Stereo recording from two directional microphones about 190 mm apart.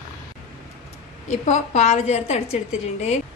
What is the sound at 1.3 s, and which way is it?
A woman's voice, 35° left (ahead or behind).